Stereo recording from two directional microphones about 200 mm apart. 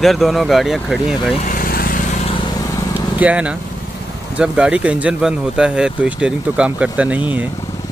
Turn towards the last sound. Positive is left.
turn(degrees=-5)  # may be behind; listen again after turning